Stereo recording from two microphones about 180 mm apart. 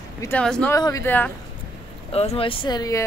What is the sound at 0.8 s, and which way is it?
Speech, 20° left (ahead or behind).